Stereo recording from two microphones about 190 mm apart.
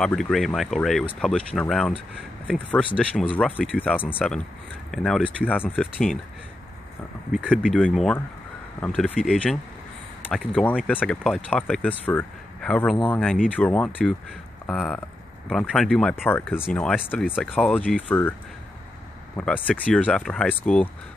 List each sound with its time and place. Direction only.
0.0 s speech: centre (ahead or behind)
7.3 s speech: 5° left (ahead or behind)
19.3 s speech: 10° left (ahead or behind)